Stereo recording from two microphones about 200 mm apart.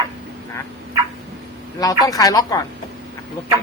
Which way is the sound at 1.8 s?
20° left (ahead or behind).